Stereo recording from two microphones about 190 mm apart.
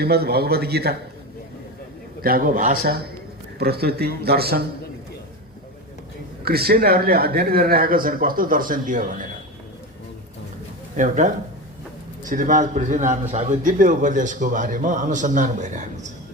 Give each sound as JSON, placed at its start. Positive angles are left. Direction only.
{"t": 0.0, "sound": "a man's voice", "side_deg": -55}
{"t": 2.2, "sound": "a man's voice", "side_deg": -50}
{"t": 6.4, "sound": "speech", "side_deg": -55}
{"t": 10.9, "sound": "a man's voice", "side_deg": -40}